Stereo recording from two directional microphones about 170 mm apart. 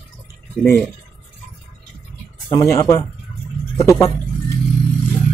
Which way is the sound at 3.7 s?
15° left (ahead or behind).